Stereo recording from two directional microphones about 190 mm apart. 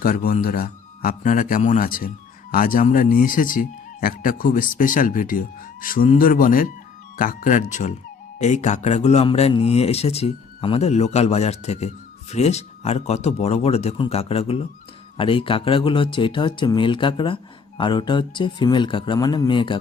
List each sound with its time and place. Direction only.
0.0 s a man's voice: 50° left (ahead or behind); by 19.8 s 25° left (ahead or behind)